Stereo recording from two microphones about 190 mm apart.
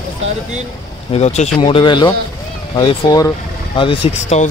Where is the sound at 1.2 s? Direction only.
35° left (ahead or behind).